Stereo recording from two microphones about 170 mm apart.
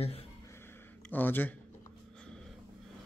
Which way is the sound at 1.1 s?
10° left (ahead or behind).